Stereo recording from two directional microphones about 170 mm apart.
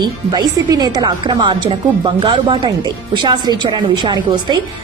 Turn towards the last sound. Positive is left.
turn(degrees=-25)  # may be behind; listen again after turning